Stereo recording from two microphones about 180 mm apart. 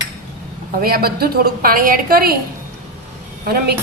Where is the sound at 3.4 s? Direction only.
60° right (ahead or behind).